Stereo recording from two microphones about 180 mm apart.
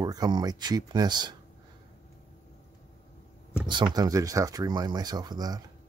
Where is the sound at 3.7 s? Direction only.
25° right (ahead or behind).